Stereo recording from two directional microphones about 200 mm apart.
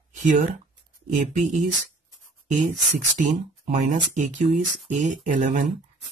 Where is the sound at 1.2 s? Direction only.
40° right (ahead or behind).